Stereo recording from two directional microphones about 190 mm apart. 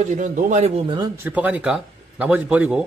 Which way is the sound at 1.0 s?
10° right (ahead or behind).